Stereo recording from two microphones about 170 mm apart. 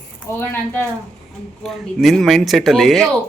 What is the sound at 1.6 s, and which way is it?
Speech, centre (ahead or behind).